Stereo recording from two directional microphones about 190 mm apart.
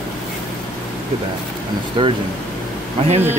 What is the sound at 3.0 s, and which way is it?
Speech, 35° right (ahead or behind).